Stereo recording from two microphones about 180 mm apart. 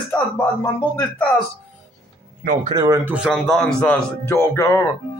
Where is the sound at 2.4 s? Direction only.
50° right (ahead or behind).